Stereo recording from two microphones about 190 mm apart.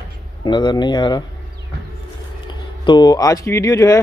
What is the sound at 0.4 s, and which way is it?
Speech, 25° left (ahead or behind).